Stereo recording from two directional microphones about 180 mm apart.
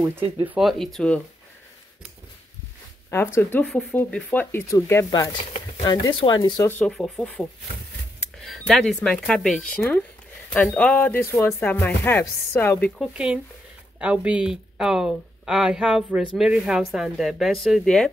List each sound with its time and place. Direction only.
0.5 s a woman's voice: centre (ahead or behind)
3.1 s speech: 15° left (ahead or behind)
6.7 s a woman's voice: 5° left (ahead or behind)
12.9 s a woman's voice: 5° right (ahead or behind)